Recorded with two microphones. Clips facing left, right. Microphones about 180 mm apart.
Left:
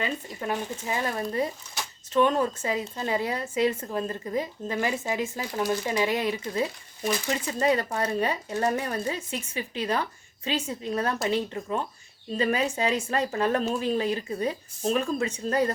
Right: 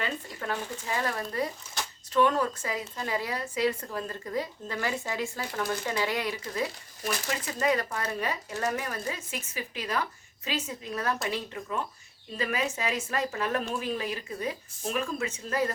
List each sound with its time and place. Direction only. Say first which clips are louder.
0.0 s a woman's voice: left 3 dB; 15° left (ahead or behind); by 15.7 s 35° left (ahead or behind)